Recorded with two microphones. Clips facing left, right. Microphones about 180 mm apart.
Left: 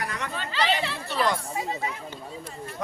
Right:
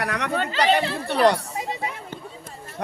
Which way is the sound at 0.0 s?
70° right (ahead or behind).